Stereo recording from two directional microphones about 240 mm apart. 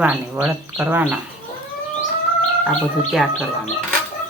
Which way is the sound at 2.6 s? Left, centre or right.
Centre.